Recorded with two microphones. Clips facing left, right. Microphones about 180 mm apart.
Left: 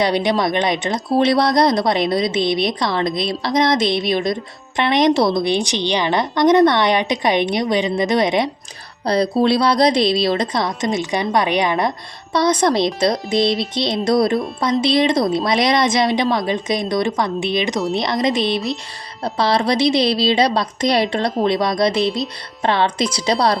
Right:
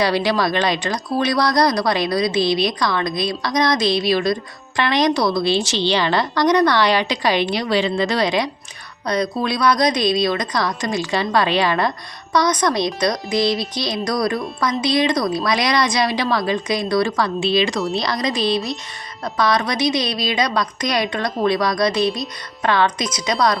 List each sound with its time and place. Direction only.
0.0 s speech: 20° left (ahead or behind)
13.4 s music: centre (ahead or behind)
13.7 s speech: 25° left (ahead or behind)